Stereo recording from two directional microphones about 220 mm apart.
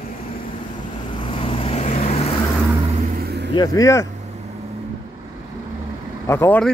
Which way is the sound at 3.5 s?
20° left (ahead or behind).